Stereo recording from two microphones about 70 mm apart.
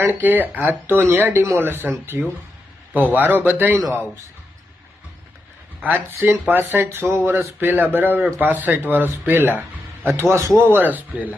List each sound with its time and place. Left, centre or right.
0.1 s speech: right
5.8 s speech: right
6.1 s speech: right
6.5 s speech: right